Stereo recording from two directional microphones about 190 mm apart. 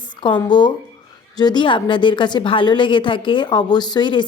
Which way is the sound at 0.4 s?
25° left (ahead or behind).